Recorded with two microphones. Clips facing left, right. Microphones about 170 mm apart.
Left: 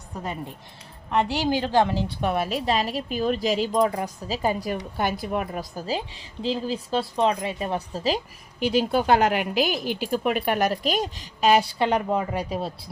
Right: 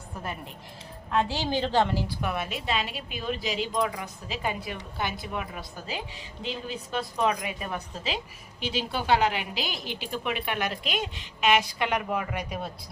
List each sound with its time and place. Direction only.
1.1 s a woman's voice: 15° left (ahead or behind)
2.2 s speech: 35° left (ahead or behind)